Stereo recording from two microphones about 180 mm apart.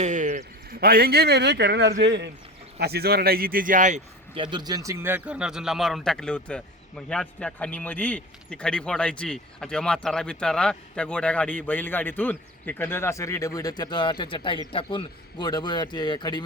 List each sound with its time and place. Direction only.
0.0 s a sound: 40° right (ahead or behind)
0.8 s speech: 55° right (ahead or behind); by 2.3 s 75° right (ahead or behind)
2.7 s speech: 60° right (ahead or behind); by 4.0 s 45° right (ahead or behind)
4.4 s a man's voice: 25° right (ahead or behind); by 16.4 s 25° left (ahead or behind)